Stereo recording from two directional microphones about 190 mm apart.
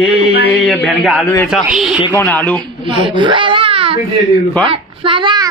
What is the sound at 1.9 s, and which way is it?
Speech, 20° left (ahead or behind).